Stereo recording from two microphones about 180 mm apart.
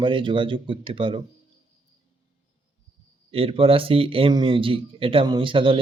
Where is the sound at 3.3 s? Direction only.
30° right (ahead or behind).